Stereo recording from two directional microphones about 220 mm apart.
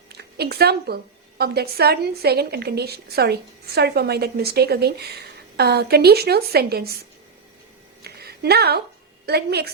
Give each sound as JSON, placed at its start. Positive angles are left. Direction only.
{"t": 0.1, "sound": "a woman's voice", "side_deg": -45}
{"t": 8.0, "sound": "a sound", "side_deg": -45}
{"t": 9.2, "sound": "a woman's voice", "side_deg": -45}